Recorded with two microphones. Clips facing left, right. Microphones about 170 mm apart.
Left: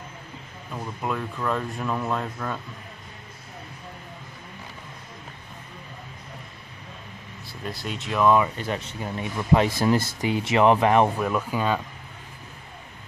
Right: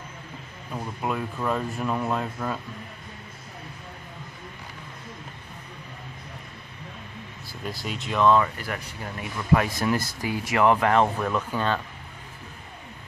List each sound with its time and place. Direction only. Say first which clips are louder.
0.7 s speech: even; 5° right (ahead or behind)
7.4 s speech: left 1 dB; centre (ahead or behind)
8.5 s speech: left 4 dB; 25° left (ahead or behind)
11.1 s speech: left 1 dB; 10° left (ahead or behind)